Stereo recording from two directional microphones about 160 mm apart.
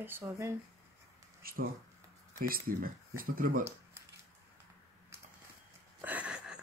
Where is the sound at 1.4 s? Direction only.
65° right (ahead or behind).